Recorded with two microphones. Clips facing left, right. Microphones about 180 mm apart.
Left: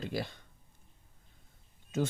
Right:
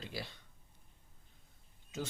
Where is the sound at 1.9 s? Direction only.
55° left (ahead or behind).